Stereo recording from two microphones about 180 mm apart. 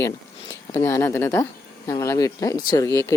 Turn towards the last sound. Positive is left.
turn(degrees=15)  # may be behind; listen again after turning